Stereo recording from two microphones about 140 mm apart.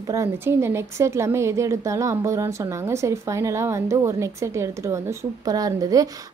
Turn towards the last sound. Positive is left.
turn(degrees=-25)  # may be behind; listen again after turning